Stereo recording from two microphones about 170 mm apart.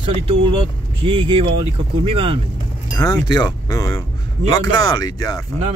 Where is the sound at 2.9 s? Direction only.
20° left (ahead or behind).